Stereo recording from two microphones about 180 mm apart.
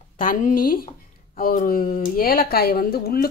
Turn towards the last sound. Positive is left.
turn(degrees=60)  # may be behind; listen again after turning